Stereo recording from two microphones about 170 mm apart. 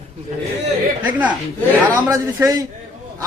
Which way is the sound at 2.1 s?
20° right (ahead or behind).